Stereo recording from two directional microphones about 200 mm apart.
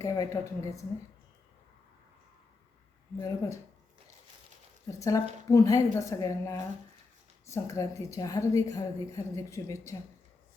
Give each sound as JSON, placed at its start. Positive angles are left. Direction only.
{"t": 0.0, "sound": "a woman's voice", "side_deg": 15}
{"t": 3.2, "sound": "a woman's voice", "side_deg": 15}
{"t": 4.9, "sound": "a woman's voice", "side_deg": 15}